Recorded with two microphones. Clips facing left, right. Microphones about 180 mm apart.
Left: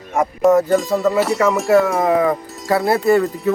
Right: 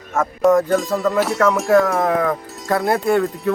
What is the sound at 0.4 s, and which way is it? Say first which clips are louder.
Speech: left 1 dB; 5° left (ahead or behind).